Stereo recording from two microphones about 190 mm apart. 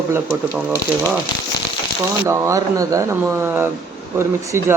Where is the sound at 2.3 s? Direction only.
15° right (ahead or behind).